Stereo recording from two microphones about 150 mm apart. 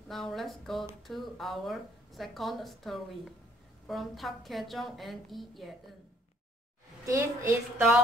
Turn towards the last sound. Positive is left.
turn(degrees=-15)  # may be behind; listen again after turning